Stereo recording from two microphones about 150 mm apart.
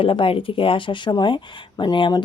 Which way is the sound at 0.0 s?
35° left (ahead or behind).